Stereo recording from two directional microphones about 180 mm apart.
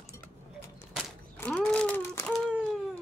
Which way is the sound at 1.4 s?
5° left (ahead or behind).